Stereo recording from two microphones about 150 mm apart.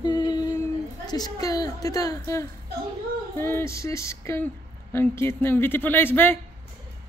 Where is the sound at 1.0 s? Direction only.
25° left (ahead or behind).